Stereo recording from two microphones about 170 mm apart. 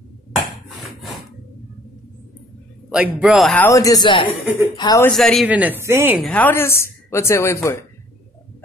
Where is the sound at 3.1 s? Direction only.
Centre (ahead or behind).